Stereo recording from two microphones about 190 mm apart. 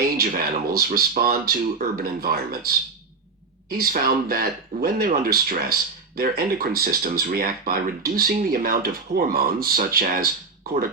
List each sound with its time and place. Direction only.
0.0 s speech: 50° right (ahead or behind)